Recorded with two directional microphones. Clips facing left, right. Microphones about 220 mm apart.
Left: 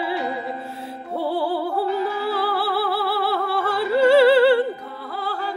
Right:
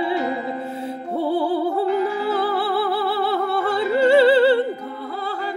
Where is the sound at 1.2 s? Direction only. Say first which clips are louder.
Right 3 dB; 20° right (ahead or behind).